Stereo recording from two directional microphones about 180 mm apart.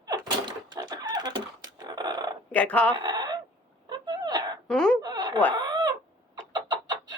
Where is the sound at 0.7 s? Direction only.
20° right (ahead or behind).